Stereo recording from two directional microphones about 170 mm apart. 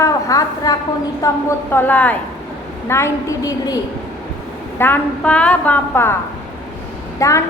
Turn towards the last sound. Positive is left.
turn(degrees=20)  # may be behind; listen again after turning